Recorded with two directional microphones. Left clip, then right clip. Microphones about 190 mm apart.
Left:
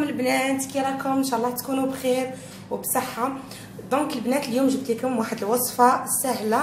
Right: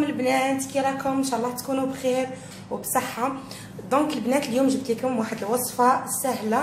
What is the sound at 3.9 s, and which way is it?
Speech, 10° right (ahead or behind).